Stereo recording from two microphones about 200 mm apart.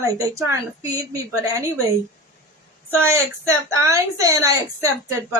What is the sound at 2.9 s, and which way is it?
A woman's voice, 15° right (ahead or behind).